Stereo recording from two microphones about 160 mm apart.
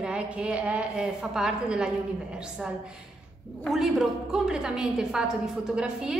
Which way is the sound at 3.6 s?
Centre (ahead or behind).